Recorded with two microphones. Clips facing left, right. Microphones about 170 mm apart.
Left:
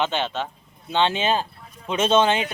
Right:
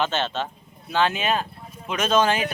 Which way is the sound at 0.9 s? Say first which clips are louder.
Left 1 dB; 25° left (ahead or behind).